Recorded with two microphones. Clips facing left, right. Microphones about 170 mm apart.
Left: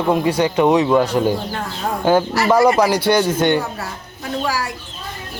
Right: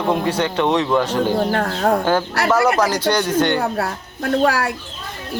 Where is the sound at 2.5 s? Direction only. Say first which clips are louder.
Left 3 dB; 10° left (ahead or behind).